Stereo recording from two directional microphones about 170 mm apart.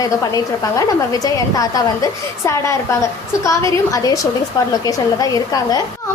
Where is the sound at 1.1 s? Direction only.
20° left (ahead or behind).